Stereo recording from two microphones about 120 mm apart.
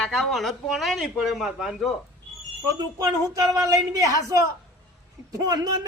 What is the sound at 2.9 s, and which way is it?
Speech, 30° right (ahead or behind).